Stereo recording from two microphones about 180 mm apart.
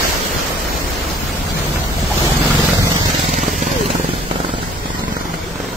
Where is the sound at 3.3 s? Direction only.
45° right (ahead or behind).